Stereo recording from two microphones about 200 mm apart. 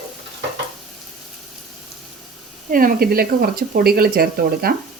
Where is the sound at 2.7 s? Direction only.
45° right (ahead or behind).